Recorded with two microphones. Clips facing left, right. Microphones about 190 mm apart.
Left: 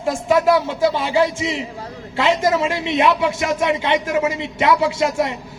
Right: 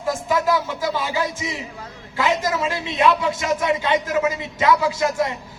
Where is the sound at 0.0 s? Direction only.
25° left (ahead or behind).